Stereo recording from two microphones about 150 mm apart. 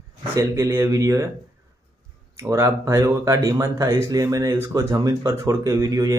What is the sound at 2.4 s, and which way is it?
Speech, 20° right (ahead or behind).